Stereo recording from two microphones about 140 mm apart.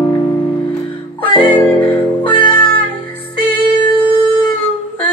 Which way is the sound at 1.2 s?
40° left (ahead or behind).